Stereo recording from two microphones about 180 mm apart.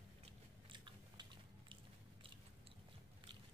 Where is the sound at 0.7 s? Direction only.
25° right (ahead or behind).